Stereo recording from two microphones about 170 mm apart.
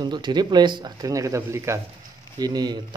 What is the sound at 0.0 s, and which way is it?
Speech, 25° right (ahead or behind).